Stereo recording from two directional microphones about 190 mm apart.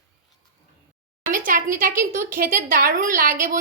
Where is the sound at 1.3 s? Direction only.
45° right (ahead or behind).